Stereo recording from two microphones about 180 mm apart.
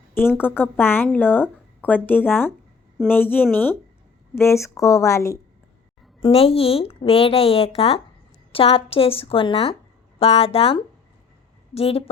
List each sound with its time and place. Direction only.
0.1 s speech: 10° left (ahead or behind)
6.2 s speech: 35° left (ahead or behind)